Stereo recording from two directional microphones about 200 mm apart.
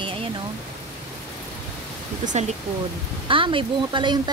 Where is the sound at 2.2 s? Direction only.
35° right (ahead or behind).